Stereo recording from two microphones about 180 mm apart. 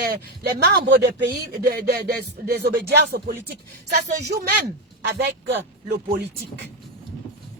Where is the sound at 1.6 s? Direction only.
60° right (ahead or behind).